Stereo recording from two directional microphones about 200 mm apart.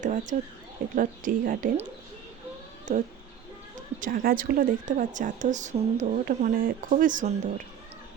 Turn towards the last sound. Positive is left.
turn(degrees=-40)  # may be behind; listen again after turning